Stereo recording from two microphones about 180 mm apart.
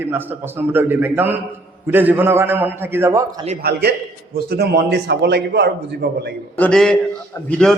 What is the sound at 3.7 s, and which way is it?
A man's voice, 60° right (ahead or behind).